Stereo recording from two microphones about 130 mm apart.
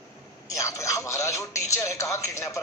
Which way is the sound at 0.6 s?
25° left (ahead or behind).